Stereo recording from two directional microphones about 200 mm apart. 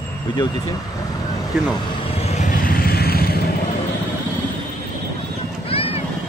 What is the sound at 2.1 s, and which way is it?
Vehicle, 35° left (ahead or behind).